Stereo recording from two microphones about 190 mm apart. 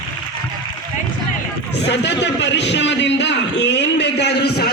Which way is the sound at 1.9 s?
65° left (ahead or behind).